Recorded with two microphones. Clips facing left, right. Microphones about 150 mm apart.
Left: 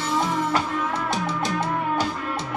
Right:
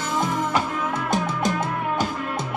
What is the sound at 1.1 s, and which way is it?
Music, 45° right (ahead or behind).